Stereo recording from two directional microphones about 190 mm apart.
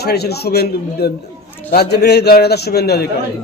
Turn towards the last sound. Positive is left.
turn(degrees=55)  # may be behind; listen again after turning